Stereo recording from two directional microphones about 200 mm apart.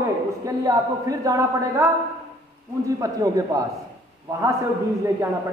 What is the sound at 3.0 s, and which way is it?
Speech, 15° right (ahead or behind).